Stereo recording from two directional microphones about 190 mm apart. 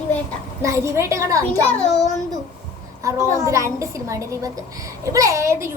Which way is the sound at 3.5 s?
15° right (ahead or behind).